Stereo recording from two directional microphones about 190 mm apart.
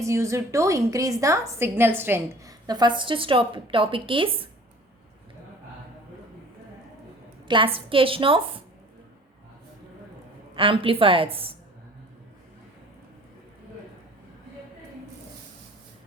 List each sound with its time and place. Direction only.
0.0 s a woman's voice: 15° right (ahead or behind)
7.4 s a woman's voice: 25° right (ahead or behind)
10.5 s a woman's voice: 30° right (ahead or behind)